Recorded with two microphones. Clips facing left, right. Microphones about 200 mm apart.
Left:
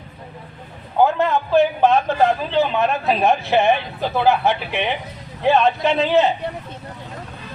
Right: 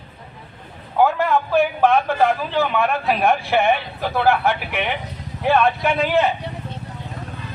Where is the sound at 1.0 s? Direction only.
20° left (ahead or behind).